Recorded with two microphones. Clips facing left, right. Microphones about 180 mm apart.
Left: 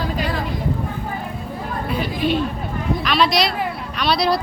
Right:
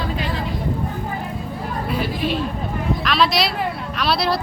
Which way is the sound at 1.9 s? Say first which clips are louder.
Left 2 dB; centre (ahead or behind).